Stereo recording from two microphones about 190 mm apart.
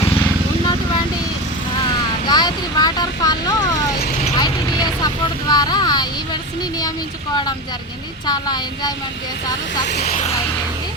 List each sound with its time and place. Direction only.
2.2 s vehicle: 20° left (ahead or behind)
8.3 s speech: 20° left (ahead or behind)
9.9 s speech: 35° left (ahead or behind)